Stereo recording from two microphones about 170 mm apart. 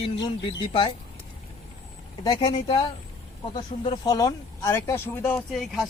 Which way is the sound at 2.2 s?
25° left (ahead or behind).